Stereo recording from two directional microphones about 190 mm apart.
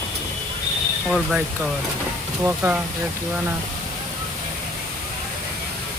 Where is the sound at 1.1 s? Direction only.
Centre (ahead or behind).